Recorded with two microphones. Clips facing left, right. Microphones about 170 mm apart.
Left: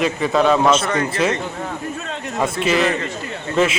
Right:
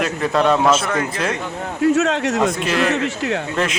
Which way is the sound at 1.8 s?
85° right.